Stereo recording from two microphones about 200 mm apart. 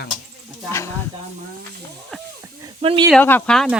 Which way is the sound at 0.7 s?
15° left (ahead or behind).